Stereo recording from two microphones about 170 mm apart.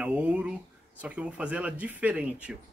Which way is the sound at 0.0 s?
10° right (ahead or behind).